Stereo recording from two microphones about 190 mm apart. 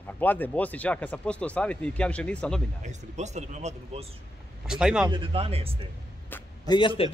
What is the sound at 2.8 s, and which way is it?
Speech, 40° right (ahead or behind).